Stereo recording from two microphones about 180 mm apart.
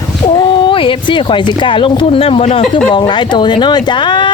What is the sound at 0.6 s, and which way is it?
Speech, 30° left (ahead or behind).